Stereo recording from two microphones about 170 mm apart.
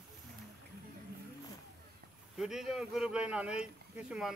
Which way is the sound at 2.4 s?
Centre (ahead or behind).